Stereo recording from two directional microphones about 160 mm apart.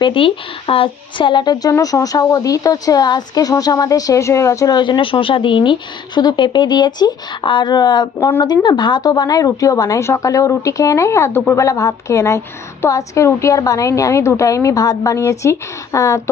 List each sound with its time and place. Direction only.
0.0 s a woman's voice: 35° left (ahead or behind)